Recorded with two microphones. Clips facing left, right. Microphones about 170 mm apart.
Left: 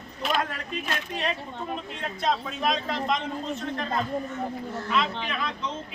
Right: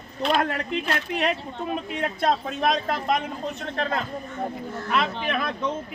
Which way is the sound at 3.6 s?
65° right (ahead or behind).